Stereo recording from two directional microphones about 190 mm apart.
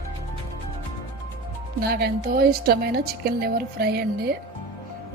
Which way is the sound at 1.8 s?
55° right (ahead or behind).